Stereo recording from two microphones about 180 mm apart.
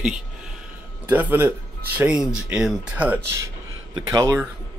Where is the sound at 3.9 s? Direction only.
20° right (ahead or behind).